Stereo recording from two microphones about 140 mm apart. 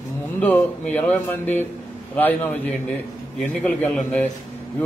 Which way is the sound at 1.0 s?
15° left (ahead or behind).